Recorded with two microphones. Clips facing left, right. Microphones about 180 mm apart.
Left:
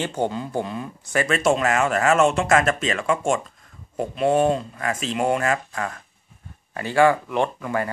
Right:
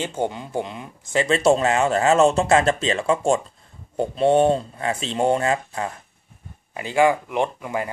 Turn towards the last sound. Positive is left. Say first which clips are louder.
# left 1 dB
turn(degrees=-15)  # may be behind; listen again after turning